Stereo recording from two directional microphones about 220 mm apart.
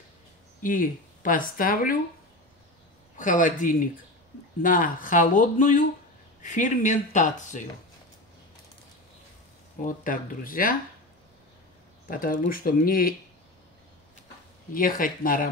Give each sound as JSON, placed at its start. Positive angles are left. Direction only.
{"t": 0.6, "sound": "speech", "side_deg": 40}
{"t": 3.2, "sound": "speech", "side_deg": 35}
{"t": 9.8, "sound": "speech", "side_deg": 40}
{"t": 12.1, "sound": "speech", "side_deg": 40}
{"t": 14.7, "sound": "speech", "side_deg": 40}